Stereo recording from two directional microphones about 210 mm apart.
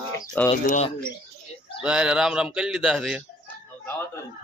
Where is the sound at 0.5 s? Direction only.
30° left (ahead or behind).